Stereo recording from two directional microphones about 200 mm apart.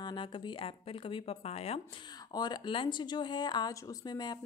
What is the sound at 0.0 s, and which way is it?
Speech, 25° left (ahead or behind).